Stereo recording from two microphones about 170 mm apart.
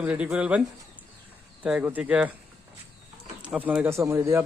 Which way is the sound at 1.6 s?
5° right (ahead or behind).